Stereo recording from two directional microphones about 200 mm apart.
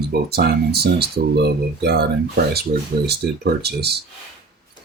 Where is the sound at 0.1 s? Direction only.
50° right (ahead or behind).